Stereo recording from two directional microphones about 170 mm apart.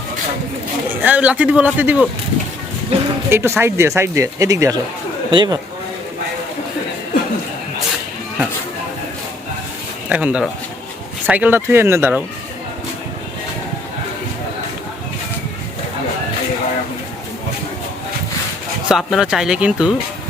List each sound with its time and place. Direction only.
1.0 s speech: 10° right (ahead or behind)
2.9 s speech: 35° right (ahead or behind)
3.2 s speech: 15° right (ahead or behind)
10.1 s speech: 10° right (ahead or behind)
18.9 s speech: centre (ahead or behind)